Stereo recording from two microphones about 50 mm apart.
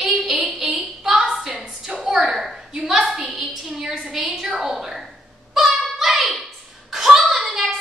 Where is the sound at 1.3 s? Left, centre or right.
Centre.